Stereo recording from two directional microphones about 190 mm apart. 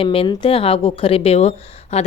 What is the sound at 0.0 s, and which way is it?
A woman's voice, 30° left (ahead or behind).